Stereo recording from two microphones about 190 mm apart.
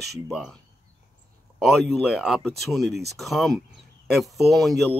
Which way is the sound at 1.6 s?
Centre (ahead or behind).